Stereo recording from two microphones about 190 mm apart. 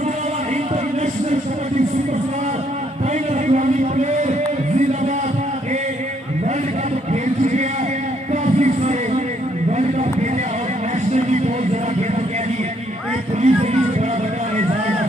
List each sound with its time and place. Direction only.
3.4 s music: 40° right (ahead or behind)
7.1 s a sound: 40° right (ahead or behind)
8.3 s music: 40° right (ahead or behind)
9.7 s a sound: 40° right (ahead or behind)
11.1 s music: 40° right (ahead or behind)
13.4 s music: 35° right (ahead or behind)